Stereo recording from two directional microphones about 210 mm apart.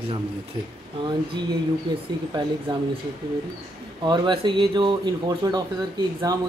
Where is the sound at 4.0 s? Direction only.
20° right (ahead or behind).